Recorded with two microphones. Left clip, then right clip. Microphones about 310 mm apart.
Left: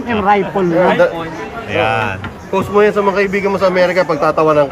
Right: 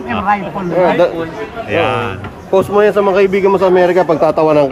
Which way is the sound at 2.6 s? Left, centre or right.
Right.